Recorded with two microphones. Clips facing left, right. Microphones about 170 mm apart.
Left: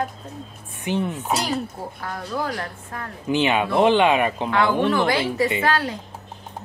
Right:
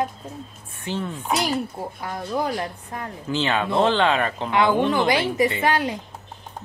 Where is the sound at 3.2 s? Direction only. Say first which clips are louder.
Left 3 dB; 15° left (ahead or behind).